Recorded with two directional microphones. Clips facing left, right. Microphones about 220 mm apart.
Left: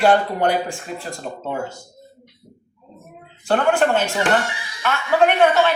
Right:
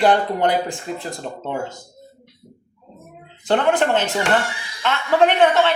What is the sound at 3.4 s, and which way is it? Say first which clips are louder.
Speech: even; 20° right (ahead or behind).